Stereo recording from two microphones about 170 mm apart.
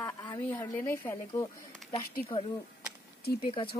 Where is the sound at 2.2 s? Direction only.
30° left (ahead or behind).